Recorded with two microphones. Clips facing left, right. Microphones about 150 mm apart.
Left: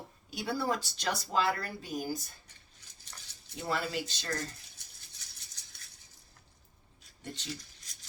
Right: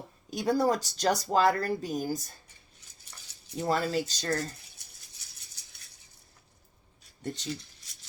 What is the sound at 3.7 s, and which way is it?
Speech, 40° right (ahead or behind).